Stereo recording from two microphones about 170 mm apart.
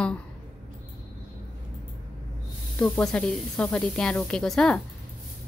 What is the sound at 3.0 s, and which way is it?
A woman's voice, 5° left (ahead or behind).